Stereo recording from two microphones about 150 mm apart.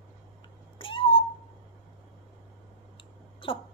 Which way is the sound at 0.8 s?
35° left (ahead or behind).